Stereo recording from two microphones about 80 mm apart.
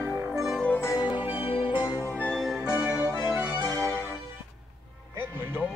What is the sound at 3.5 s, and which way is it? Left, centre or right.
Music, right.